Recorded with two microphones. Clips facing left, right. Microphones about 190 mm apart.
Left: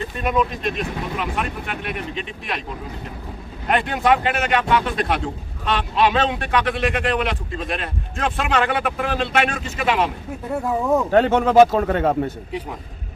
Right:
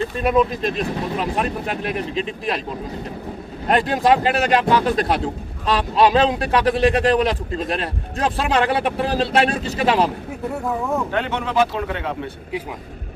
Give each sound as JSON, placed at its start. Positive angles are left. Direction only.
{"t": 0.2, "sound": "a man's voice", "side_deg": -35}
{"t": 3.7, "sound": "a man's voice", "side_deg": -35}
{"t": 11.1, "sound": "a man's voice", "side_deg": 45}